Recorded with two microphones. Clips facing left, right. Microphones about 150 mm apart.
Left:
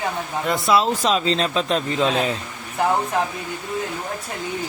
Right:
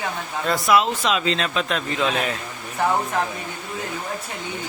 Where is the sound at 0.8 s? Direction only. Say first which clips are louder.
Left 1 dB; 35° left (ahead or behind).